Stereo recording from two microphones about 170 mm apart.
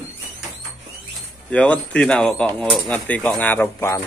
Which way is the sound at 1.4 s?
10° left (ahead or behind).